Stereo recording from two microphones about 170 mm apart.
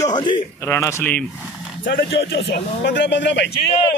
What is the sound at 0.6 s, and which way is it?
Speech, 15° left (ahead or behind).